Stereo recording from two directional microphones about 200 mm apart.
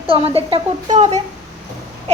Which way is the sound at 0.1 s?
30° right (ahead or behind).